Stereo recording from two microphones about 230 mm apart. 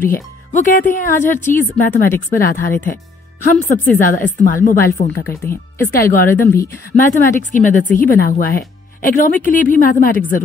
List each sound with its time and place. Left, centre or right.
0.0 s speech: left
1.2 s speech: centre
1.6 s speech: left
5.8 s speech: centre
7.0 s speech: left